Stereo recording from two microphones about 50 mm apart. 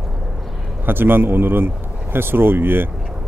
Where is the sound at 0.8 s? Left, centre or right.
Right.